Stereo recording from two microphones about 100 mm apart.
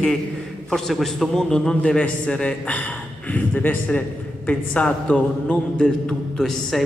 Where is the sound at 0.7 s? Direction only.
Centre (ahead or behind).